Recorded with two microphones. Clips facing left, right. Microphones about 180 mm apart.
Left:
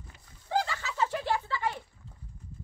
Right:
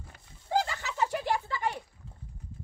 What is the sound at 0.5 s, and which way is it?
Bird, 15° right (ahead or behind).